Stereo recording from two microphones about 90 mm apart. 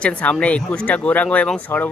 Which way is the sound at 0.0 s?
15° left (ahead or behind).